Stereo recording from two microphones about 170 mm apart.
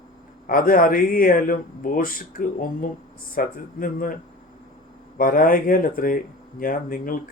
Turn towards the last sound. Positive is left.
turn(degrees=55)  # may be behind; listen again after turning